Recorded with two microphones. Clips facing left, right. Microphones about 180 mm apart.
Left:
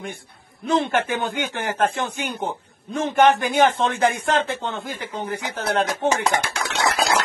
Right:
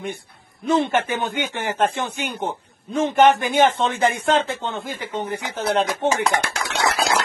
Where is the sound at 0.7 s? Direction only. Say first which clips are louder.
Right 1 dB; centre (ahead or behind).